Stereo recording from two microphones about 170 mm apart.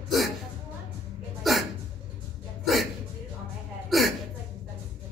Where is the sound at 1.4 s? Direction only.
Centre (ahead or behind).